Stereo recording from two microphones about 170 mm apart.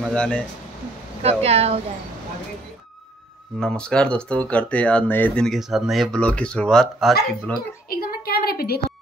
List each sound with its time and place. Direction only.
0.1 s speech: 5° left (ahead or behind)
1.2 s speech: 35° right (ahead or behind)
3.5 s speech: 5° left (ahead or behind)
7.9 s a sound: 60° left (ahead or behind)